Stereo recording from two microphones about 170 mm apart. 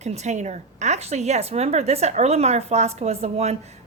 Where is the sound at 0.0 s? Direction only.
40° right (ahead or behind).